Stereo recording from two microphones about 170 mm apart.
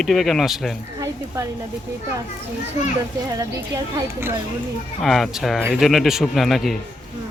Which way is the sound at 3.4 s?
15° right (ahead or behind).